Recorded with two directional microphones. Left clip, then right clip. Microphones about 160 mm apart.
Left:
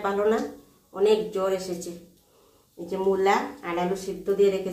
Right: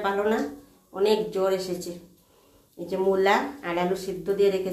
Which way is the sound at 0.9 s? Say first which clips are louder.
Left 1 dB; 25° right (ahead or behind).